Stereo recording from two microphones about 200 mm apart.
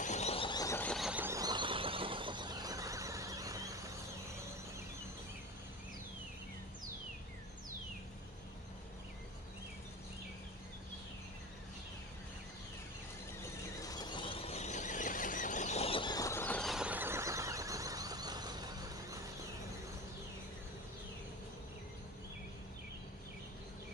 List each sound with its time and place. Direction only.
0.0 s horse: 35° left (ahead or behind); by 3.8 s 15° right (ahead or behind)
13.7 s squeal: 20° left (ahead or behind); by 19.1 s 20° right (ahead or behind)